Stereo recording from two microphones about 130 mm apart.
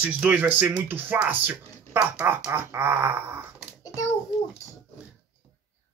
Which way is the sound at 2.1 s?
20° right (ahead or behind).